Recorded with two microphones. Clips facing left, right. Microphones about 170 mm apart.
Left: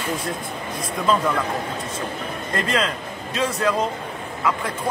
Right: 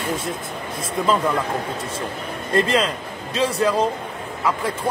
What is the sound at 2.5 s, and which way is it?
Speech, 30° right (ahead or behind).